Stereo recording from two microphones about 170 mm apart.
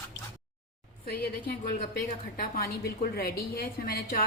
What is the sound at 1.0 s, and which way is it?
A woman's voice, 65° left (ahead or behind).